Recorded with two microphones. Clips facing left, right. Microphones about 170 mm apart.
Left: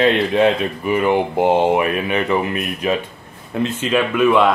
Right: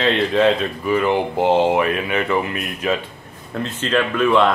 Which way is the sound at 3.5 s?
10° left (ahead or behind).